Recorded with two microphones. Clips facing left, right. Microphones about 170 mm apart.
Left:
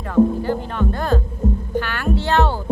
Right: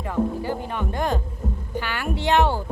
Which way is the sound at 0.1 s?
15° right (ahead or behind).